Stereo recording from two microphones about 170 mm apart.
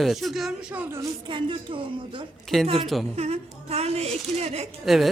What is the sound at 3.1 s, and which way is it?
A woman's voice, 40° right (ahead or behind).